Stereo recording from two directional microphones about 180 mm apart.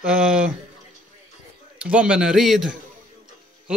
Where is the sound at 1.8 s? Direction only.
5° right (ahead or behind).